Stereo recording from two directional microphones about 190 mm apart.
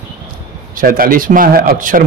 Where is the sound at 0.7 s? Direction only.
50° right (ahead or behind).